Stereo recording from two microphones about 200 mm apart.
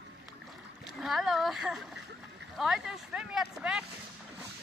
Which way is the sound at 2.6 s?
Centre (ahead or behind).